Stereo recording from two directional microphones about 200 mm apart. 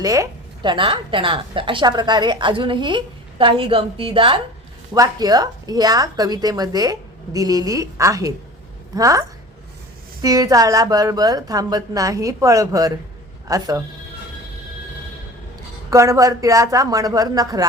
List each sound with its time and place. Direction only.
0.0 s a woman's voice: 15° right (ahead or behind)
10.2 s a woman's voice: 20° right (ahead or behind)
15.9 s a woman's voice: 15° right (ahead or behind)